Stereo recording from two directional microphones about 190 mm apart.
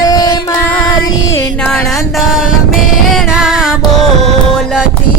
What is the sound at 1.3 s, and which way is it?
Music, 10° left (ahead or behind).